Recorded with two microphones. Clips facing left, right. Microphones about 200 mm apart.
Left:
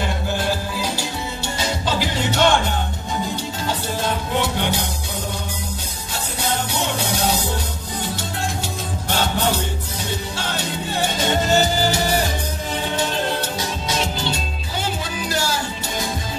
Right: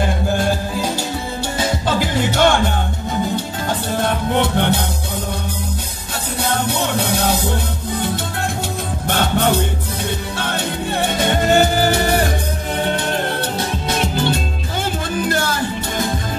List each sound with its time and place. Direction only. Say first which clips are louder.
0.4 s music: right 4 dB; 50° right (ahead or behind)
3.6 s music: right 3 dB; 55° right (ahead or behind)
9.1 s music: right 4 dB; 55° right (ahead or behind)